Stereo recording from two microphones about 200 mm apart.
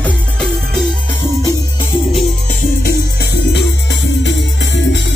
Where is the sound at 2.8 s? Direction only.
50° left (ahead or behind).